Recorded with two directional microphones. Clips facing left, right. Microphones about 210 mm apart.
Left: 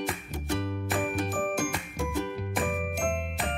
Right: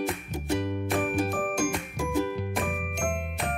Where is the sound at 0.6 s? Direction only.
15° right (ahead or behind); by 3.5 s centre (ahead or behind).